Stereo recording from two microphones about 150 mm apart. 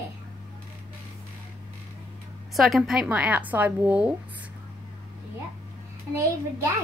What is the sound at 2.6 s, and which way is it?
Speech, centre (ahead or behind).